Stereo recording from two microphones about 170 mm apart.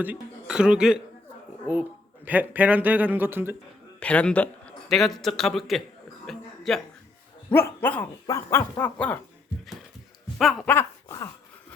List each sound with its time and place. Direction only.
0.0 s a man's voice: 5° right (ahead or behind)
4.0 s a man's voice: 5° left (ahead or behind)
6.2 s a sound: 5° left (ahead or behind)
7.5 s dog: 15° left (ahead or behind)
10.7 s laughter: 15° left (ahead or behind)